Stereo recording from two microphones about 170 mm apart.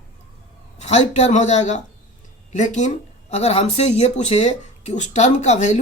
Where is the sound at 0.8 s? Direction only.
40° left (ahead or behind).